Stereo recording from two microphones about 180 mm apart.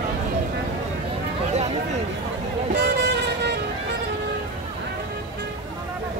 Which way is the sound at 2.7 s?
75° right (ahead or behind).